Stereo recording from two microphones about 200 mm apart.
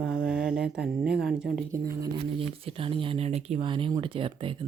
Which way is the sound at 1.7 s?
15° right (ahead or behind).